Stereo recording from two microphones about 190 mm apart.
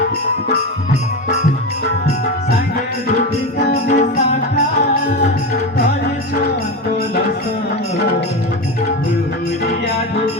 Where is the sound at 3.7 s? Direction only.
40° left (ahead or behind).